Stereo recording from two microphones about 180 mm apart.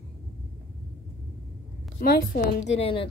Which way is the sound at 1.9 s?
55° left (ahead or behind).